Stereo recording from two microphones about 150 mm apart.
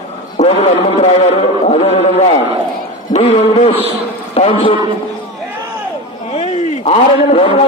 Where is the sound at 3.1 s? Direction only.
40° left (ahead or behind).